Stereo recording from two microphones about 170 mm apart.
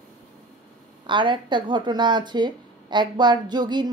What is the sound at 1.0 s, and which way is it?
Speech, 30° right (ahead or behind).